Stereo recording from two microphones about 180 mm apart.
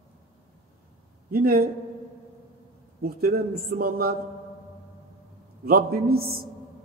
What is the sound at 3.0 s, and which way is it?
A man's voice, 55° right (ahead or behind).